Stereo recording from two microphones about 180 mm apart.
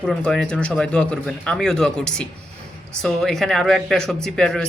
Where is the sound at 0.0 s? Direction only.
5° left (ahead or behind).